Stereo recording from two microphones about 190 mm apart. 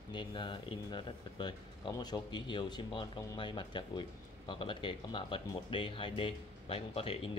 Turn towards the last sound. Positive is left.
turn(degrees=30)  # may be behind; listen again after turning